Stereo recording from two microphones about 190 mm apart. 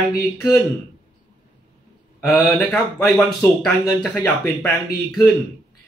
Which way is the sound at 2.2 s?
10° left (ahead or behind).